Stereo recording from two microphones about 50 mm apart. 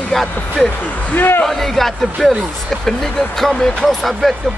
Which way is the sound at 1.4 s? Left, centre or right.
Centre.